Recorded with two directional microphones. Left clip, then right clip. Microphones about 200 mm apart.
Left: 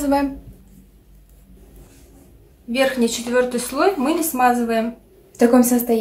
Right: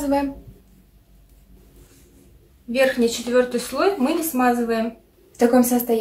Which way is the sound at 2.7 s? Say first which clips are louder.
Even; 10° left (ahead or behind).